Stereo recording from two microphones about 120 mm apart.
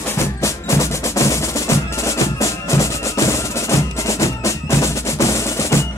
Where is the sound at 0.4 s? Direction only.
25° left (ahead or behind).